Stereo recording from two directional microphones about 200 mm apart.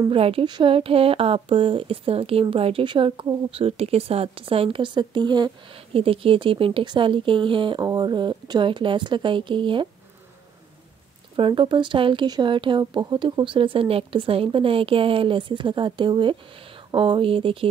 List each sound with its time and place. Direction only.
0.1 s speech: 30° right (ahead or behind)
11.3 s speech: 25° right (ahead or behind)